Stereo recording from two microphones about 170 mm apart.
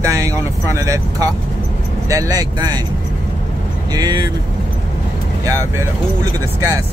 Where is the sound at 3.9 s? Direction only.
25° right (ahead or behind).